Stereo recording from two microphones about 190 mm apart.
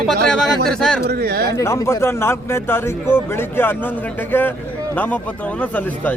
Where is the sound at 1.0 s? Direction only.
55° right (ahead or behind).